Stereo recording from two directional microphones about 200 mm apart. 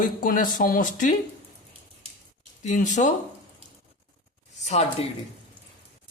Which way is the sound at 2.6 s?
40° left (ahead or behind).